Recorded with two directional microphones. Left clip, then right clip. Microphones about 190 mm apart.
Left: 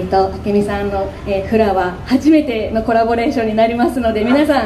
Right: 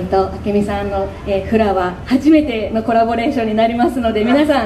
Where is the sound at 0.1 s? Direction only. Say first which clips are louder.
Left 1 dB; 20° left (ahead or behind).